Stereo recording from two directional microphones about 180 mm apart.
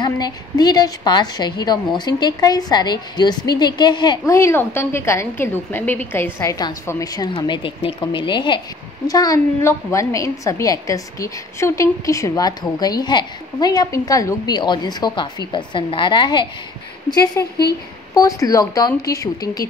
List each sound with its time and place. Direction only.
0.0 s a woman's voice: 20° left (ahead or behind)